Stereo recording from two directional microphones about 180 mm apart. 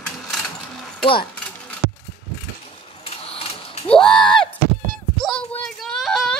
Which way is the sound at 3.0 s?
35° left (ahead or behind).